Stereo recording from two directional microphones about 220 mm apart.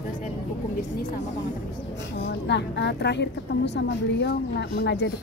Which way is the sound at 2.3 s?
50° left (ahead or behind).